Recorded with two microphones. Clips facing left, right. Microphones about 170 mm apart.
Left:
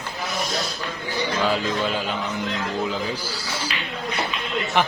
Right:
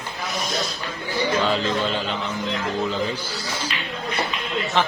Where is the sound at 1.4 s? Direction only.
5° left (ahead or behind).